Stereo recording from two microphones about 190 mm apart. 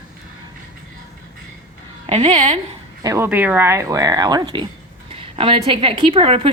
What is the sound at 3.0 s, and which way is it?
A woman's voice, 15° right (ahead or behind).